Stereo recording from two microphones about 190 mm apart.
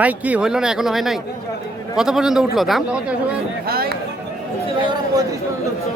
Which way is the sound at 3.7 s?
50° right (ahead or behind).